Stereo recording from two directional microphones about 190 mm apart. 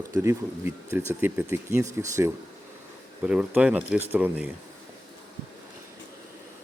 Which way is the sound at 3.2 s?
5° right (ahead or behind).